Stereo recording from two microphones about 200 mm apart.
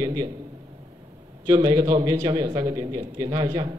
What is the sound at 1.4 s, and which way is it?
A man's voice, 20° right (ahead or behind).